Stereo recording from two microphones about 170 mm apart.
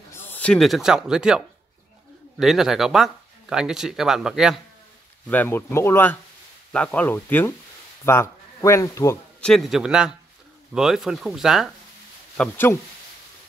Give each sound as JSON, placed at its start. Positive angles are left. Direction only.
{"t": 0.1, "sound": "speech", "side_deg": 10}
{"t": 5.3, "sound": "speech", "side_deg": 10}
{"t": 9.4, "sound": "speech", "side_deg": 0}
{"t": 12.4, "sound": "speech", "side_deg": 10}